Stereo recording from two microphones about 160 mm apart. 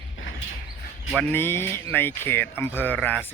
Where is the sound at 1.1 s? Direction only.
15° left (ahead or behind).